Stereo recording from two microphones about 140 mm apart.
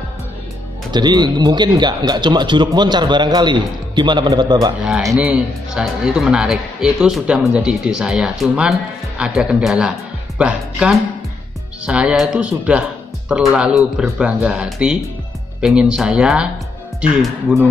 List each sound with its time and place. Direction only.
0.9 s speech: 30° right (ahead or behind)
5.1 s speech: 5° right (ahead or behind)